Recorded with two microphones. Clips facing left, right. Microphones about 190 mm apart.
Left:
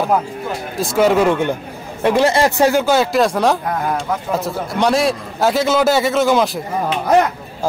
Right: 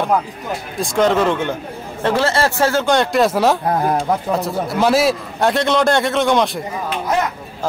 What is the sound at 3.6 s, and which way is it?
Speech, 30° right (ahead or behind).